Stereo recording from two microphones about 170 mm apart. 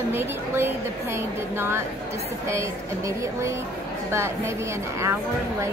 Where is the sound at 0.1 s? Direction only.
15° right (ahead or behind).